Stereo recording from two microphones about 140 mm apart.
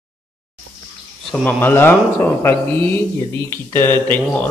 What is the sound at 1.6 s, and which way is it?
Speech, 15° left (ahead or behind).